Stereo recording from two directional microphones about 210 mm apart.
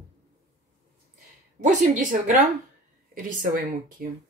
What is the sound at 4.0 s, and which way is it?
Speech, 45° right (ahead or behind).